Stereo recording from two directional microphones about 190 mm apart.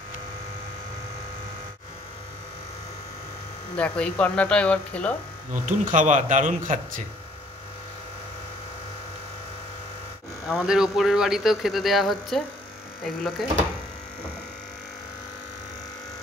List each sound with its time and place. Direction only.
3.7 s speech: 5° left (ahead or behind)
5.5 s speech: 45° right (ahead or behind)
10.5 s speech: 5° right (ahead or behind)